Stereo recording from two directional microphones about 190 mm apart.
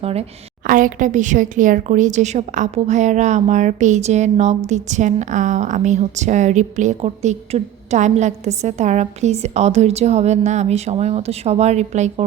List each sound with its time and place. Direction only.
0.0 s a woman's voice: 35° right (ahead or behind)